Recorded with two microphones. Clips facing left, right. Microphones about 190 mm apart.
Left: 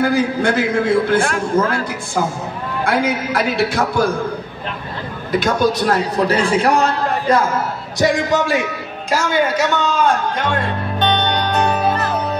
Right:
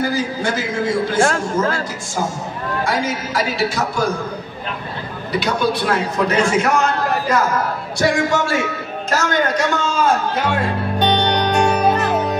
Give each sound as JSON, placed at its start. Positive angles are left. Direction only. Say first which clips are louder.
{"t": 0.0, "sound": "a man's voice", "louder": "left 4 dB", "side_deg": 55}
{"t": 5.3, "sound": "a man's voice", "louder": "left 3 dB", "side_deg": 45}
{"t": 8.0, "sound": "a man's voice", "louder": "left 1 dB", "side_deg": 20}
{"t": 9.1, "sound": "music", "louder": "left 2 dB", "side_deg": 10}